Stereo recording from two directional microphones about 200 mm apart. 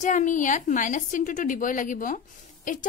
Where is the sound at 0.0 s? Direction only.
40° left (ahead or behind).